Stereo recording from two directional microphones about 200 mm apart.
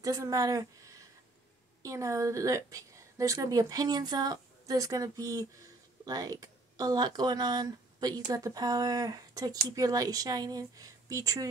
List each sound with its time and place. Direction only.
0.0 s a woman's voice: 15° right (ahead or behind)